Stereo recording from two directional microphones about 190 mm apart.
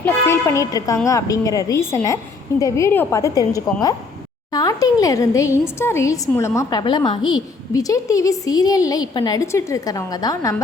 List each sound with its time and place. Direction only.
0.0 s a woman's voice: 15° left (ahead or behind)